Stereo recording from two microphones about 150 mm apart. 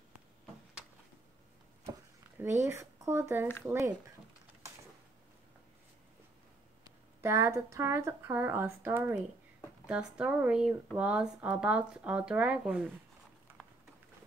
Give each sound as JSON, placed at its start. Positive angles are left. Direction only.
{"t": 1.9, "sound": "a sound", "side_deg": -15}
{"t": 3.6, "sound": "speech", "side_deg": -20}
{"t": 7.2, "sound": "speech", "side_deg": -15}